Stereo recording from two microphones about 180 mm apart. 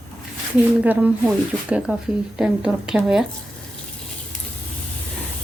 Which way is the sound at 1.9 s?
5° right (ahead or behind).